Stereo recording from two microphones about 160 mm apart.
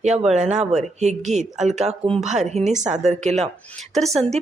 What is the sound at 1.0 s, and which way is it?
Speech, 45° right (ahead or behind).